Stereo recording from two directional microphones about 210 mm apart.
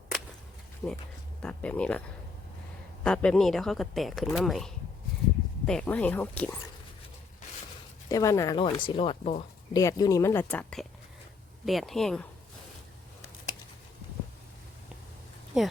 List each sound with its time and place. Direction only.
0.8 s a woman's voice: 10° left (ahead or behind)
3.0 s a woman's voice: 5° left (ahead or behind)
8.1 s a woman's voice: 15° left (ahead or behind)
15.5 s speech: 5° right (ahead or behind)